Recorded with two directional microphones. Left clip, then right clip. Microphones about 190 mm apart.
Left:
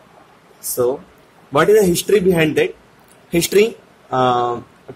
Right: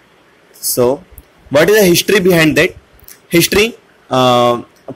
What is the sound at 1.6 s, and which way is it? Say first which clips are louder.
Speech: right 3 dB; 25° right (ahead or behind).